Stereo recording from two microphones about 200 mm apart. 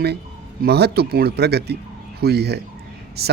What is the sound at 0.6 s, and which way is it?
Speech, 55° right (ahead or behind).